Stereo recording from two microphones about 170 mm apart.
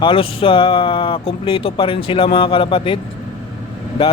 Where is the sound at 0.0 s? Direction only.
30° left (ahead or behind).